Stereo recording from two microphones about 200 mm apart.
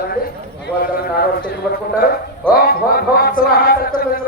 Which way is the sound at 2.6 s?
50° left (ahead or behind).